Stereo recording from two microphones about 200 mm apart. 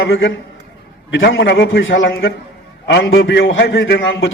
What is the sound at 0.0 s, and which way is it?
A man's voice, 70° left (ahead or behind).